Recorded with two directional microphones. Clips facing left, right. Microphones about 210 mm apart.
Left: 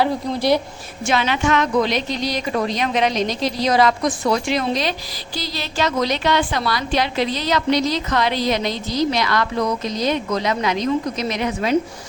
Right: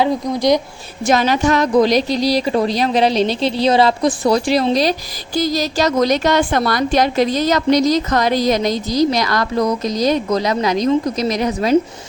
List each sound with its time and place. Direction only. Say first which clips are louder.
0.0 s a woman's voice: right 3 dB; 15° right (ahead or behind)
1.0 s a woman's voice: right 5 dB; 40° right (ahead or behind)